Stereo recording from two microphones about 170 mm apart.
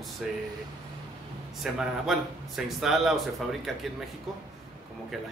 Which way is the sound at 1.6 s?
Centre (ahead or behind).